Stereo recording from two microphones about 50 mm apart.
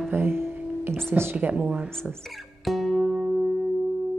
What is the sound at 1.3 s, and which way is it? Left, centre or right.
Speech, right.